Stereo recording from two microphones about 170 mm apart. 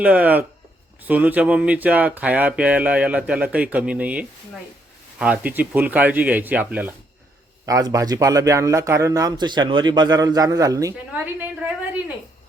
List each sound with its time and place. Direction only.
0.0 s speech: 10° right (ahead or behind)
7.7 s speech: 20° right (ahead or behind)